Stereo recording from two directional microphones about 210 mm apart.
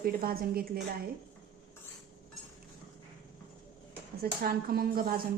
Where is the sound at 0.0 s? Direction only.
45° right (ahead or behind).